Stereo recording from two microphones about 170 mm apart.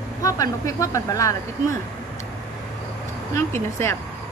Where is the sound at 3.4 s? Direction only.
15° left (ahead or behind).